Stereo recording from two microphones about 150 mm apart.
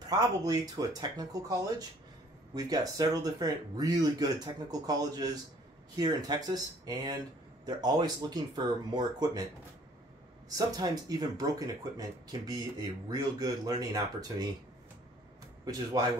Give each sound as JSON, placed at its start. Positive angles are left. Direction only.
{"t": 0.1, "sound": "speech", "side_deg": -25}
{"t": 10.5, "sound": "speech", "side_deg": -25}